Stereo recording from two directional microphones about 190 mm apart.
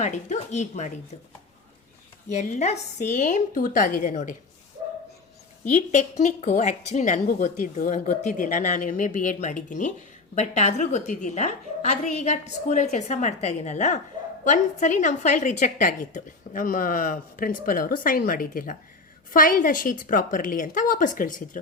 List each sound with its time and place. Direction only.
0.0 s a woman's voice: 35° left (ahead or behind)
2.3 s a woman's voice: 40° left (ahead or behind)
5.7 s a woman's voice: 40° left (ahead or behind)